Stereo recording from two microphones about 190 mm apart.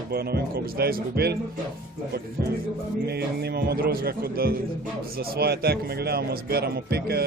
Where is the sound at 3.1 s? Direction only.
60° right (ahead or behind).